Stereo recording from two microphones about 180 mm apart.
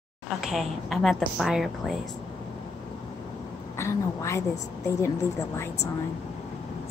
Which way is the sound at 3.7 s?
15° left (ahead or behind).